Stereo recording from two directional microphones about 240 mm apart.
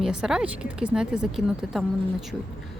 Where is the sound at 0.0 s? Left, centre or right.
Centre.